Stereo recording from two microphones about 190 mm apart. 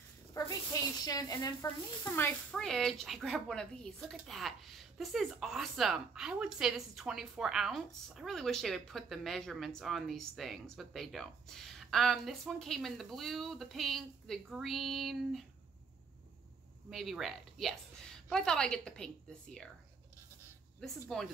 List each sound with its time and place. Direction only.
0.3 s a sound: 20° left (ahead or behind)
1.0 s a woman's voice: 20° left (ahead or behind)
2.1 s a woman's voice: 5° left (ahead or behind)
16.9 s a woman's voice: centre (ahead or behind)
20.8 s a woman's voice: centre (ahead or behind)